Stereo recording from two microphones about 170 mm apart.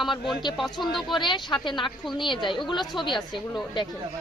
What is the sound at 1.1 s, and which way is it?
A woman's voice, 25° left (ahead or behind).